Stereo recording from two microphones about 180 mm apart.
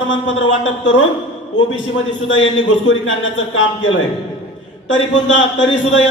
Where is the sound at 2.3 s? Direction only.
90° left.